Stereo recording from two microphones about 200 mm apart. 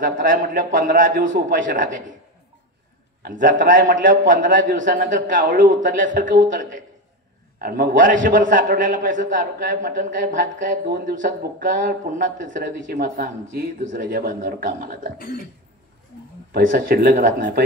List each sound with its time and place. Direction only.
0.0 s a man's voice: 40° right (ahead or behind)
3.2 s a man's voice: 40° right (ahead or behind)
16.5 s a man's voice: 45° right (ahead or behind)